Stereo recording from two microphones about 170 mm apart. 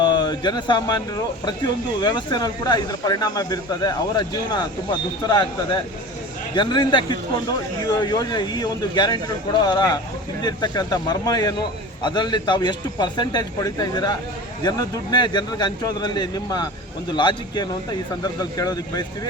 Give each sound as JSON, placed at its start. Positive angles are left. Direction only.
{"t": 0.0, "sound": "speech", "side_deg": 25}